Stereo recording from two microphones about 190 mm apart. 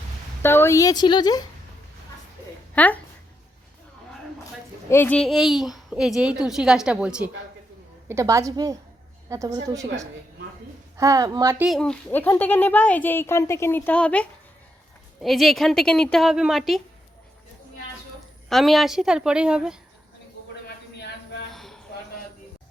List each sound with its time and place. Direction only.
0.4 s speech: 10° left (ahead or behind)
2.7 s speech: 10° left (ahead or behind)
4.9 s a child's voice: 10° left (ahead or behind); by 9.8 s 20° right (ahead or behind)
10.9 s a woman's voice: 20° right (ahead or behind)
11.7 s a child's voice: 5° left (ahead or behind)
18.4 s a child's voice: centre (ahead or behind)
21.5 s a sound: centre (ahead or behind)